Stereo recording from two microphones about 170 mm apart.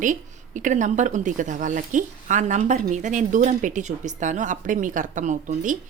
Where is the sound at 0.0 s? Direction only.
50° right (ahead or behind).